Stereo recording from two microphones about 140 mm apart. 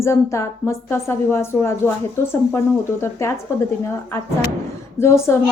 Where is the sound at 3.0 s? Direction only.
20° left (ahead or behind).